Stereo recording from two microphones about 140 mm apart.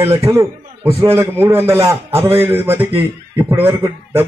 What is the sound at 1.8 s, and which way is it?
Speech, 40° right (ahead or behind).